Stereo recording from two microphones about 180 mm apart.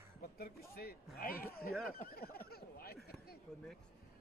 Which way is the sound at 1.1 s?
55° left (ahead or behind).